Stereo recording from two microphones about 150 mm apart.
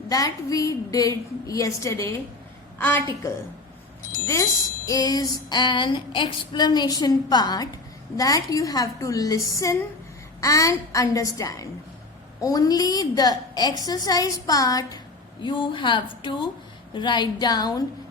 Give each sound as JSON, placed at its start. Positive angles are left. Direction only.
{"t": 0.1, "sound": "a woman's voice", "side_deg": 25}
{"t": 4.9, "sound": "a woman's voice", "side_deg": 25}